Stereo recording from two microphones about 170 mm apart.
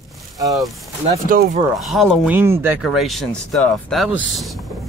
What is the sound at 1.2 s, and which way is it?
Speech, 55° right (ahead or behind).